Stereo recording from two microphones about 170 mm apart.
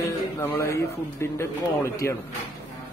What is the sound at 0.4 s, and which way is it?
Speech, 15° left (ahead or behind).